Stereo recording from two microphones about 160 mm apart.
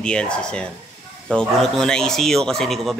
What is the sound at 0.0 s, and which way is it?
Speech, 5° left (ahead or behind).